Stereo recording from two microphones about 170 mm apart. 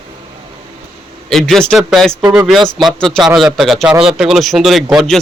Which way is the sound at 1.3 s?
Centre (ahead or behind).